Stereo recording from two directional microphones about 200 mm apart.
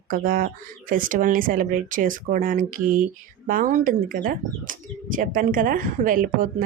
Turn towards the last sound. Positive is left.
turn(degrees=-45)  # may be behind; listen again after turning